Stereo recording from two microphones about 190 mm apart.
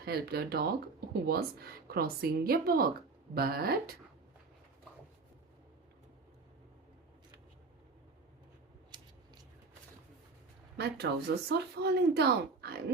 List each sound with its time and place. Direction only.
0.0 s a woman's voice: 55° right (ahead or behind)
10.8 s speech: 60° right (ahead or behind)